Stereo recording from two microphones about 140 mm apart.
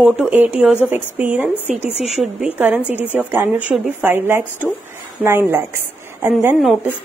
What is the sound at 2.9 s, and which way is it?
A woman's voice, 15° right (ahead or behind).